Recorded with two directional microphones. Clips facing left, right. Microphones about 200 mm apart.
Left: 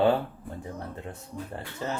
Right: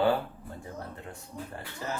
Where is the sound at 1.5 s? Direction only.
25° left (ahead or behind).